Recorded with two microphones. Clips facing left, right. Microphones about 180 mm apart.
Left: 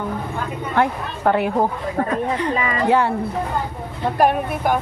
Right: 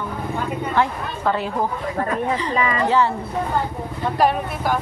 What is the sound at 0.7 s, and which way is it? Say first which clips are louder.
Speech: left 3 dB; 55° left (ahead or behind).